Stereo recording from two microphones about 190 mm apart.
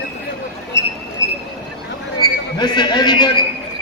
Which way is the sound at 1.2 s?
15° left (ahead or behind).